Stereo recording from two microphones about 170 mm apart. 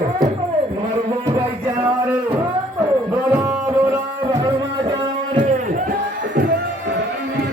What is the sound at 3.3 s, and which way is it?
Music, 10° right (ahead or behind).